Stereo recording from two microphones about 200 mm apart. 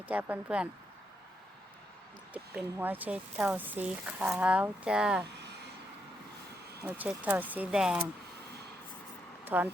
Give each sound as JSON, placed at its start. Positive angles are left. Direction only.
{"t": 0.1, "sound": "speech", "side_deg": -10}
{"t": 2.3, "sound": "speech", "side_deg": -10}
{"t": 6.8, "sound": "speech", "side_deg": -10}
{"t": 9.4, "sound": "vehicle", "side_deg": -10}